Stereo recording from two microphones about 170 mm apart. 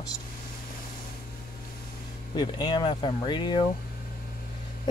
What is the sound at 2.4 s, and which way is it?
Speech, 25° left (ahead or behind).